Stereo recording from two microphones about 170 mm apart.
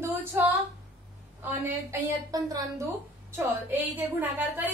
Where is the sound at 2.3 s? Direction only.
20° right (ahead or behind).